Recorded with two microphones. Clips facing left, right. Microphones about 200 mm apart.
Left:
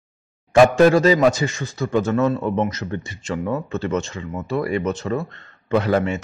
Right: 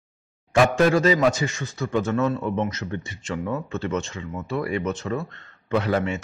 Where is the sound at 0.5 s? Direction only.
35° left (ahead or behind).